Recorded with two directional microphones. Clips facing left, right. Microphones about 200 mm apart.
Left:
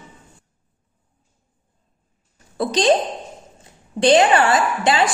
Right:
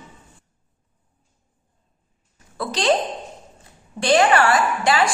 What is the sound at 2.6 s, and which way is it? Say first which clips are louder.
Speech: left 4 dB; 20° left (ahead or behind).